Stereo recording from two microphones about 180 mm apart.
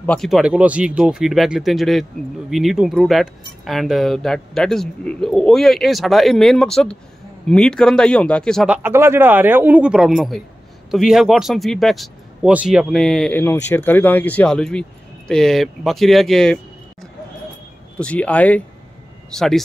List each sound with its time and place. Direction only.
0.0 s speech: 5° left (ahead or behind)
17.9 s speech: 5° left (ahead or behind)